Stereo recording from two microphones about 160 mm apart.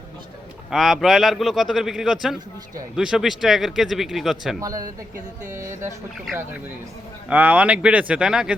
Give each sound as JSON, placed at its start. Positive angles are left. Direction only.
{"t": 0.7, "sound": "speech", "side_deg": 0}
{"t": 4.6, "sound": "speech", "side_deg": -20}
{"t": 7.3, "sound": "speech", "side_deg": -10}